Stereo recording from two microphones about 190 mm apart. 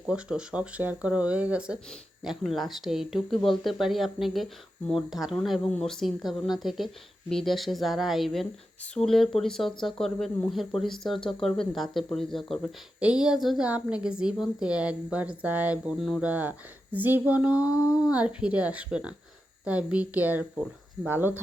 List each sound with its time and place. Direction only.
0.0 s speech: 5° right (ahead or behind)
17.7 s a sound: 20° left (ahead or behind)
18.1 s speech: 5° right (ahead or behind)